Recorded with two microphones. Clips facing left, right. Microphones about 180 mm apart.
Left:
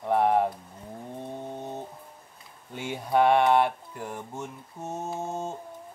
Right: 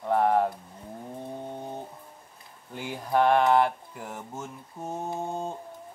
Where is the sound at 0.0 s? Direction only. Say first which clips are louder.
Even; 5° left (ahead or behind).